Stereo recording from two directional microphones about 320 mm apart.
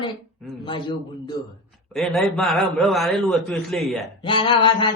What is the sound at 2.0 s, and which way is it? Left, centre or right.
A man's voice, centre.